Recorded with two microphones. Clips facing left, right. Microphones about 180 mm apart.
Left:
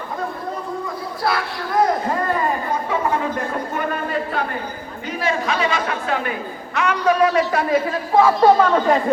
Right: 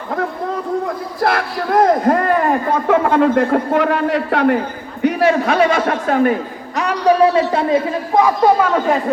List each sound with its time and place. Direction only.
1.4 s a man's voice: 60° right (ahead or behind); by 4.6 s 75° right (ahead or behind)
5.0 s a man's voice: 60° right (ahead or behind)
5.9 s a man's voice: 45° right (ahead or behind); by 9.0 s 5° right (ahead or behind)